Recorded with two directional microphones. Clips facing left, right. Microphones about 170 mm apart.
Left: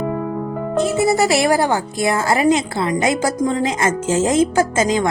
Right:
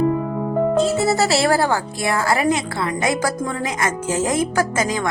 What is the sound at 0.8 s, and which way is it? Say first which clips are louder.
A woman's voice: left 5 dB; 15° left (ahead or behind).